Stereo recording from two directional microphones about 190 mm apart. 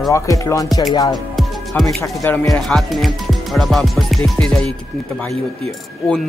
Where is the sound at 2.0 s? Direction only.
10° left (ahead or behind).